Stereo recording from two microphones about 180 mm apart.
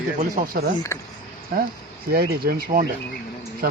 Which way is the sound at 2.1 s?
55° right (ahead or behind).